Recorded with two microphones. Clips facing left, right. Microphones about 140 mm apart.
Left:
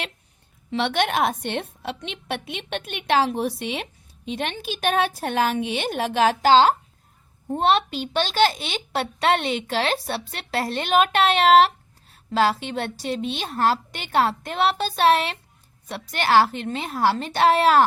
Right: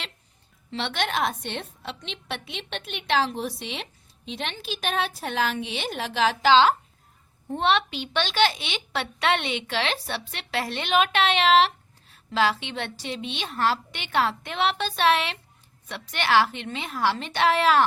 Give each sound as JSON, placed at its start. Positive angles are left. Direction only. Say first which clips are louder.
{"t": 0.7, "sound": "a woman's voice", "louder": "left 5 dB", "side_deg": 55}